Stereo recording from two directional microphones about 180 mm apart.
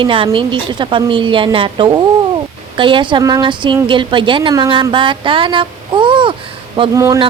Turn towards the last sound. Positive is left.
turn(degrees=-15)  # may be behind; listen again after turning